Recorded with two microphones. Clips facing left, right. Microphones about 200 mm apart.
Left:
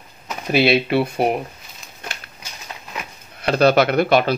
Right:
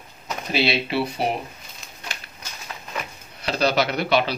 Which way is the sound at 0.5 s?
55° left (ahead or behind).